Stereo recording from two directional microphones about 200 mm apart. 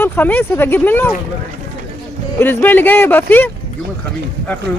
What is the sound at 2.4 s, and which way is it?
Speech, 10° left (ahead or behind).